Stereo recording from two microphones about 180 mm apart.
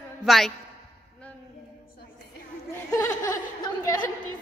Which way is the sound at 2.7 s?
15° left (ahead or behind).